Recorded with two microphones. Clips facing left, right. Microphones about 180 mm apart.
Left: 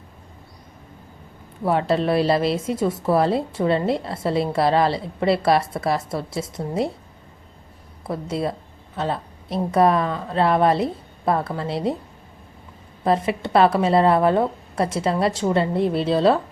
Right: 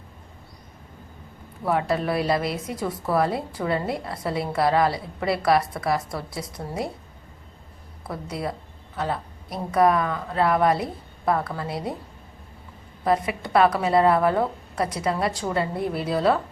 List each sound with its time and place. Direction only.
1.6 s a woman's voice: 25° left (ahead or behind)
8.0 s a woman's voice: 25° left (ahead or behind)
13.1 s a woman's voice: 25° left (ahead or behind)